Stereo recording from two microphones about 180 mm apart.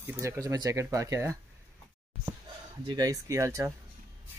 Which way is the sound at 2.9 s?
20° right (ahead or behind).